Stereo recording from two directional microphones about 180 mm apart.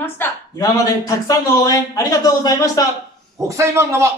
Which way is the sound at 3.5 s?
15° right (ahead or behind).